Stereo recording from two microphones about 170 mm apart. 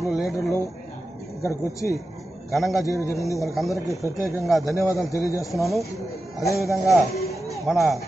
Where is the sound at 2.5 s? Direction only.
Centre (ahead or behind).